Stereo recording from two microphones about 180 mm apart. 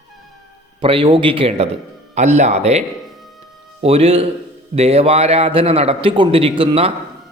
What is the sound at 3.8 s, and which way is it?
A man's voice, 35° right (ahead or behind).